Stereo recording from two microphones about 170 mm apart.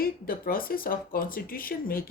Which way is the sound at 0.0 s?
60° left (ahead or behind).